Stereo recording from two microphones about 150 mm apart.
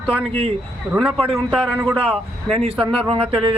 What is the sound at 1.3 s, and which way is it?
Speech, 5° right (ahead or behind).